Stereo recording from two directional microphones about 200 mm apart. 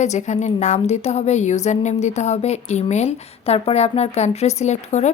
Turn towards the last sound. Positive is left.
turn(degrees=35)  # may be behind; listen again after turning